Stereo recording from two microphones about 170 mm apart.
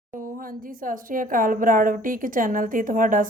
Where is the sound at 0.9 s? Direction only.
55° right (ahead or behind).